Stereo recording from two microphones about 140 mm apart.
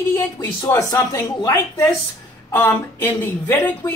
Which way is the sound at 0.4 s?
20° left (ahead or behind).